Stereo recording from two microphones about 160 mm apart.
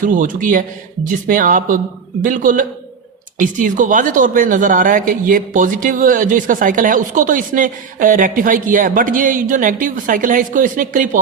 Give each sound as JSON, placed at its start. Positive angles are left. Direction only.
{"t": 0.0, "sound": "a man's voice", "side_deg": -55}